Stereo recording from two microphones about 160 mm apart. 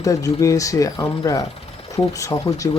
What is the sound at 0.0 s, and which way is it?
Mechanisms, 20° left (ahead or behind).